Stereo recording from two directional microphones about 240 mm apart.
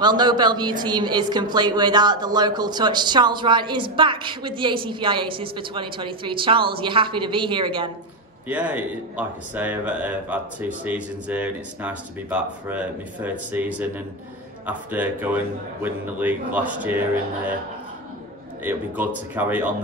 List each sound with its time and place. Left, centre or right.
0.0 s a woman's voice: centre
8.5 s a man's voice: centre
18.6 s a man's voice: centre